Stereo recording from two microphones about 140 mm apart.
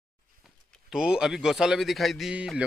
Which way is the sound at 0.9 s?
5° right (ahead or behind).